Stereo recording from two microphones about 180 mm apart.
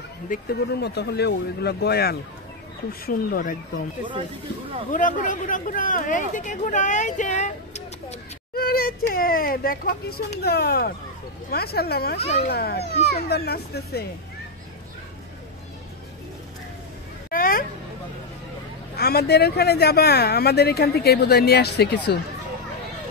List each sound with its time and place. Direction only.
0.3 s speech: 60° left (ahead or behind)
4.9 s speech: 45° left (ahead or behind)
8.5 s speech: 55° left (ahead or behind)
17.3 s a sound: 50° left (ahead or behind)
18.9 s speech: 60° left (ahead or behind)